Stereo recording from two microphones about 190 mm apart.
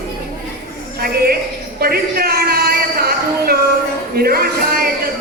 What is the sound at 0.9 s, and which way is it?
Speech, 55° right (ahead or behind).